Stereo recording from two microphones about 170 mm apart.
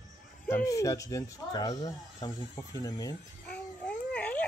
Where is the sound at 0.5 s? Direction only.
15° left (ahead or behind).